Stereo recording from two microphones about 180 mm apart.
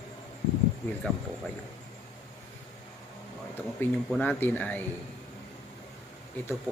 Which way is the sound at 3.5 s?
10° left (ahead or behind).